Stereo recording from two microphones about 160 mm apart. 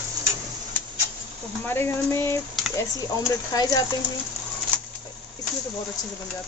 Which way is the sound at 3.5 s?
25° left (ahead or behind).